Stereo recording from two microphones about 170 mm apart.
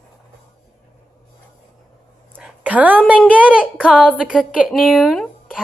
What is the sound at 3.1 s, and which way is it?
Speech, 10° right (ahead or behind).